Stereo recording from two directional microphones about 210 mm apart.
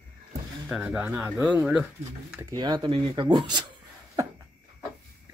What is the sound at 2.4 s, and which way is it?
Speech, 20° right (ahead or behind).